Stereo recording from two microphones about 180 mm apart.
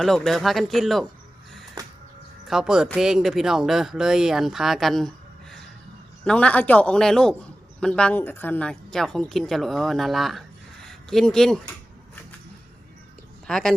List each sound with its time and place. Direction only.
0.0 s speech: centre (ahead or behind)
1.8 s a sound: 20° right (ahead or behind)
2.5 s speech: centre (ahead or behind)
13.5 s speech: 5° left (ahead or behind)